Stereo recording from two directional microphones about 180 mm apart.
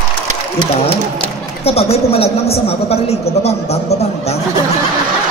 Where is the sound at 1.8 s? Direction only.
35° left (ahead or behind).